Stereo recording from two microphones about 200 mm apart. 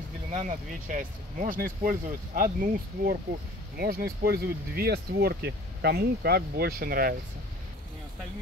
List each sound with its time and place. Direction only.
0.3 s speech: 35° right (ahead or behind)